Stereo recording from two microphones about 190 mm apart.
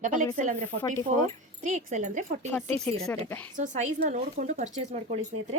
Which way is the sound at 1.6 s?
40° right (ahead or behind).